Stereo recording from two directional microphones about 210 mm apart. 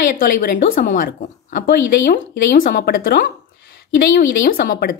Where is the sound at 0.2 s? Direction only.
45° left (ahead or behind).